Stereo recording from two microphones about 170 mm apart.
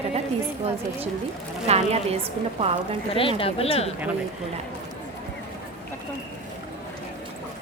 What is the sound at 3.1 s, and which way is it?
Speech, 35° left (ahead or behind).